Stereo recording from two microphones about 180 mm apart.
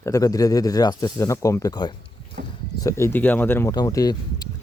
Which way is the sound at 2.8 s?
15° left (ahead or behind).